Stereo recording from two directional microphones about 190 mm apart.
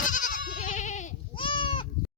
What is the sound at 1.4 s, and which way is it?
Bleat, 25° left (ahead or behind).